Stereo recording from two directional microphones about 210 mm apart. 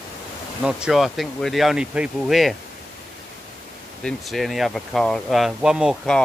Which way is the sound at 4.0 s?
Centre (ahead or behind).